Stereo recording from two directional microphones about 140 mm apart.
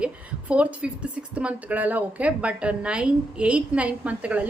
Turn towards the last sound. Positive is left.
turn(degrees=-10)  # may be behind; listen again after turning